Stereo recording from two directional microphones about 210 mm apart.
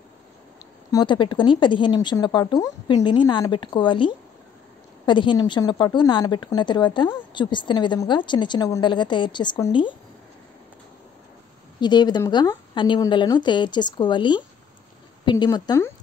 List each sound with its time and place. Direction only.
0.9 s a woman's voice: 20° left (ahead or behind)
11.8 s a woman's voice: 20° left (ahead or behind)